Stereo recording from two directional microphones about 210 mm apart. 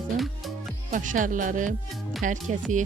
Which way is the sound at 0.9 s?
40° right (ahead or behind).